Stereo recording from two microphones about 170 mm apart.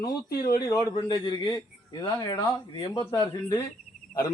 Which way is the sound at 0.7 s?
20° left (ahead or behind).